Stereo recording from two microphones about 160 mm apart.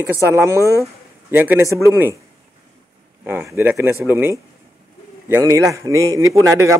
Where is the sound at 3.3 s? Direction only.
15° right (ahead or behind).